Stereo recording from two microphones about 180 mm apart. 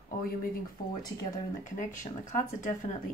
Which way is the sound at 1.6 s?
45° left (ahead or behind).